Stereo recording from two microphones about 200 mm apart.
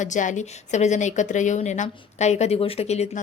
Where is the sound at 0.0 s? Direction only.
40° left (ahead or behind).